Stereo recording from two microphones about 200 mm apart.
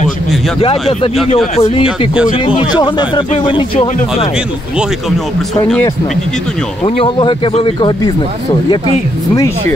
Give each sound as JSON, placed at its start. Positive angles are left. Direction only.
{"t": 0.6, "sound": "speech", "side_deg": 30}
{"t": 6.8, "sound": "speech", "side_deg": 25}